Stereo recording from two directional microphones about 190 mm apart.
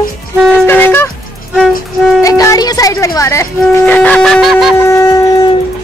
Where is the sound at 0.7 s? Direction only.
10° left (ahead or behind).